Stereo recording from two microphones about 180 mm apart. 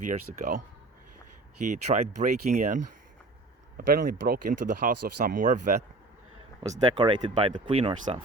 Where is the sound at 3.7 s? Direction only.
55° right (ahead or behind).